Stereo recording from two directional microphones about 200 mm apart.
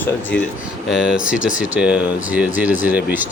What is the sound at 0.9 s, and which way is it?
Speech, 5° right (ahead or behind).